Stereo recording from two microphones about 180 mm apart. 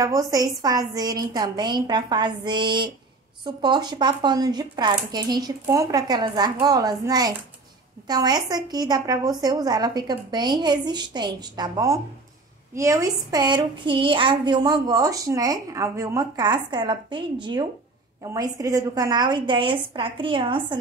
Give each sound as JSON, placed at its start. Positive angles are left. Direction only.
{"t": 0.0, "sound": "a woman's voice", "side_deg": -20}